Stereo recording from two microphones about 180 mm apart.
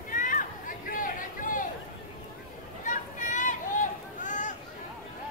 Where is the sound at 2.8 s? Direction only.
45° left (ahead or behind).